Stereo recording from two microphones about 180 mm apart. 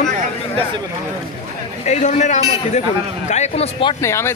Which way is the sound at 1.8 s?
40° left (ahead or behind).